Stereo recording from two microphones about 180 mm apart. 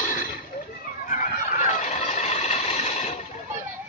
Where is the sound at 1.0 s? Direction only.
45° left (ahead or behind).